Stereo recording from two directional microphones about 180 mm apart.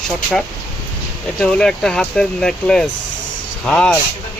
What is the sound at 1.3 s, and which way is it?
Speech, 5° left (ahead or behind).